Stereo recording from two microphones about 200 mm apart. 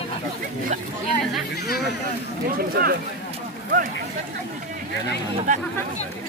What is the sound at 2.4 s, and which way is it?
Speech, 50° right (ahead or behind).